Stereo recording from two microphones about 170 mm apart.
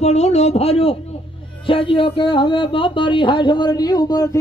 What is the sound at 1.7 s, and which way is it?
A man's voice, 30° left (ahead or behind).